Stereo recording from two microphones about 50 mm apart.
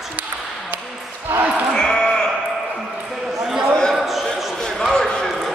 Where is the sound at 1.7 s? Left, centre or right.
Centre.